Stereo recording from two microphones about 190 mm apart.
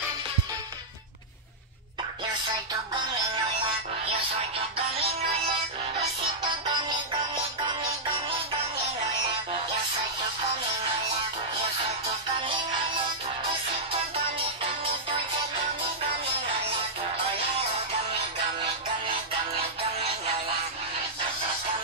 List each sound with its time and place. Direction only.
4.6 s music: 30° right (ahead or behind)
12.4 s music: 25° right (ahead or behind)
14.6 s music: 30° right (ahead or behind)
16.6 s music: 30° right (ahead or behind)